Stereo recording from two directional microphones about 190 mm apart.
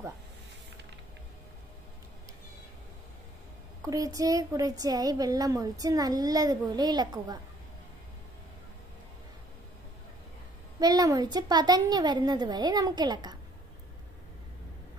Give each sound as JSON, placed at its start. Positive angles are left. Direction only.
{"t": 3.8, "sound": "speech", "side_deg": -20}
{"t": 10.8, "sound": "speech", "side_deg": -20}